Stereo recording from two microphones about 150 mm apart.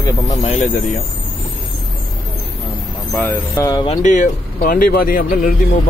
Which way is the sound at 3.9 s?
55° left (ahead or behind).